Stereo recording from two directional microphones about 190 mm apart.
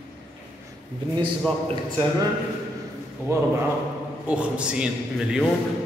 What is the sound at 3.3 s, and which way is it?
Speech, 15° right (ahead or behind).